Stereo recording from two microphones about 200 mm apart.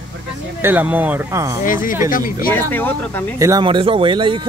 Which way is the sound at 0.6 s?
10° right (ahead or behind).